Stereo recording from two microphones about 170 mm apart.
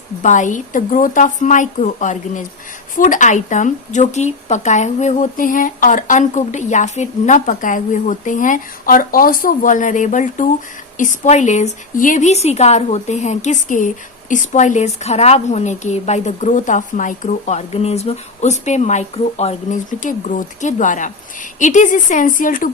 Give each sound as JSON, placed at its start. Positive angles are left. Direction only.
{"t": 0.2, "sound": "speech", "side_deg": 45}